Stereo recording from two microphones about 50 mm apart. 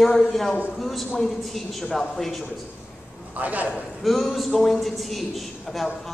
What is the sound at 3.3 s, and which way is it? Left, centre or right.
Speech, right.